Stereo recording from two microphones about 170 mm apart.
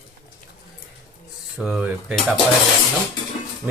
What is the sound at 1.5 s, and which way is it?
Speech, 5° right (ahead or behind).